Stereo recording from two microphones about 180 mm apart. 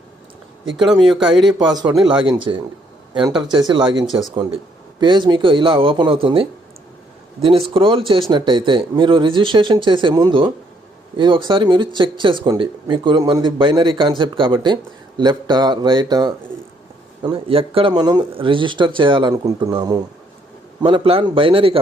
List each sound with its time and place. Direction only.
1.0 s speech: centre (ahead or behind)
1.5 s speech: 25° right (ahead or behind)
7.7 s speech: 30° right (ahead or behind)